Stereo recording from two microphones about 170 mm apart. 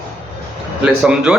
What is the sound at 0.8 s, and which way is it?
Speech, 5° right (ahead or behind).